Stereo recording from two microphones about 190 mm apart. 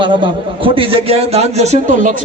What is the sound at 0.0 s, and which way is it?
A man's voice, 25° right (ahead or behind).